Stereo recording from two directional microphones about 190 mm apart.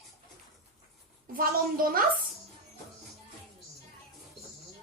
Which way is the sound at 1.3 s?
50° right (ahead or behind).